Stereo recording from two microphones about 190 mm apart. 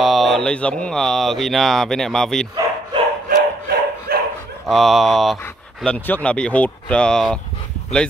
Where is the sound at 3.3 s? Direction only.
55° right (ahead or behind).